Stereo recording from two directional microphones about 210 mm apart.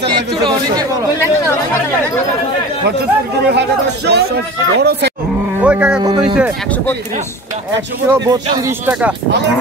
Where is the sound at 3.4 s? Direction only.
55° right (ahead or behind).